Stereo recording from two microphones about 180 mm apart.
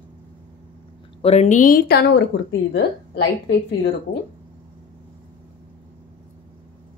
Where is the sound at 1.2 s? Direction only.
35° left (ahead or behind); by 2.2 s 60° left (ahead or behind).